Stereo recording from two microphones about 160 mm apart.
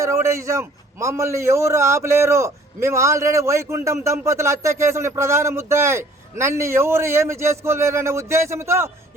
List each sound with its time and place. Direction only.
0.0 s a man's voice: 20° right (ahead or behind)